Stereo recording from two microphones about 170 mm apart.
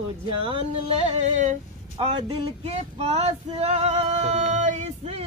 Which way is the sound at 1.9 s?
30° right (ahead or behind).